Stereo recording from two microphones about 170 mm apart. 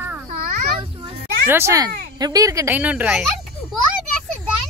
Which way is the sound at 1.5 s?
15° right (ahead or behind).